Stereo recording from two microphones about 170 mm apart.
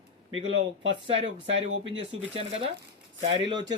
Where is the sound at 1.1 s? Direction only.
90° right.